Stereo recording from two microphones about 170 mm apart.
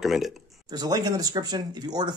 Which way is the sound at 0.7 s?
25° right (ahead or behind).